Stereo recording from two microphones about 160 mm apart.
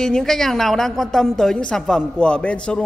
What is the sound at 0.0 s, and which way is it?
A woman's voice, centre (ahead or behind).